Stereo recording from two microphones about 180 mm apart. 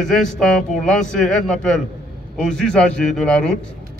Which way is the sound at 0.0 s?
5° left (ahead or behind).